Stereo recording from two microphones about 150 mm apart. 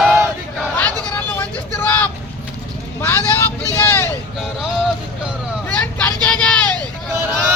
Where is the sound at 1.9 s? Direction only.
10° left (ahead or behind).